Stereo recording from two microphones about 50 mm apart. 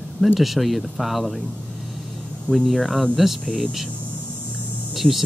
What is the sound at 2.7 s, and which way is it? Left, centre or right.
Speech, centre.